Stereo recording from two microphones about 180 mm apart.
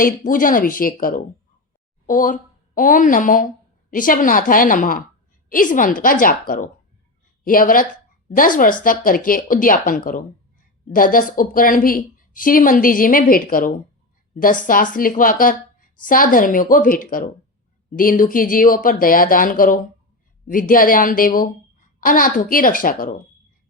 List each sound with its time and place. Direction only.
0.0 s a woman's voice: 50° left (ahead or behind)